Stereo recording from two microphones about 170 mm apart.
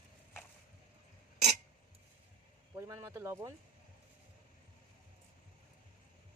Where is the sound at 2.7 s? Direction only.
15° right (ahead or behind).